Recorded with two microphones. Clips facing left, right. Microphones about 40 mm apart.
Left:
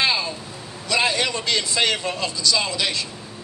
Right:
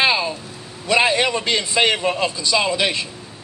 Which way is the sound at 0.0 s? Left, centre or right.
Right.